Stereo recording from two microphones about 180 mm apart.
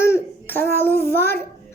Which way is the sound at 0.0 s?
15° left (ahead or behind).